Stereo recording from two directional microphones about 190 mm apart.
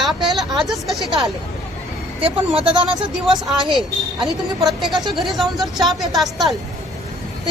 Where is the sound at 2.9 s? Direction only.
Centre (ahead or behind).